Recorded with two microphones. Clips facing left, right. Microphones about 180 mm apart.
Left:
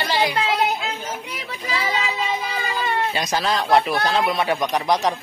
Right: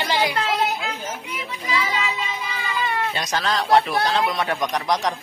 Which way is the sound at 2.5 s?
40° left (ahead or behind).